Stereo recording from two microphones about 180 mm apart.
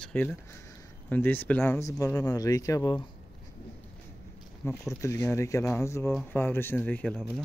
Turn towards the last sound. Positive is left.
turn(degrees=5)  # may be behind; listen again after turning